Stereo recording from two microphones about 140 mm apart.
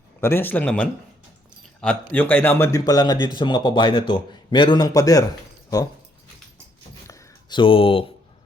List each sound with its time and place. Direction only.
0.2 s a man's voice: 15° left (ahead or behind)
2.8 s speech: 30° left (ahead or behind)
7.1 s a sound: 35° left (ahead or behind)